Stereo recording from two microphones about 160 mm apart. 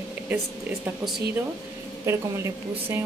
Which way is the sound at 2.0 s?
15° right (ahead or behind).